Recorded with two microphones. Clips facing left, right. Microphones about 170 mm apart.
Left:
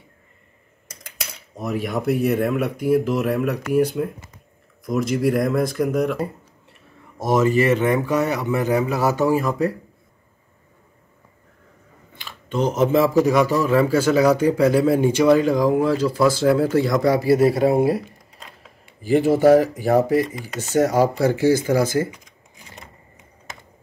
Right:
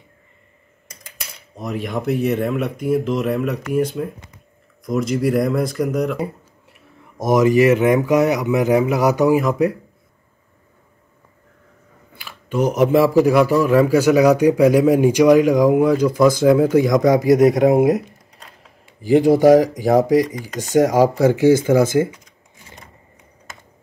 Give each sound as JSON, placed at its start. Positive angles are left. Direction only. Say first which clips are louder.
{"t": 1.5, "sound": "speech", "louder": "even", "side_deg": 5}
{"t": 7.2, "sound": "speech", "louder": "right 4 dB", "side_deg": -15}
{"t": 12.2, "sound": "speech", "louder": "right 3 dB", "side_deg": -10}
{"t": 18.9, "sound": "speech", "louder": "right 4 dB", "side_deg": -15}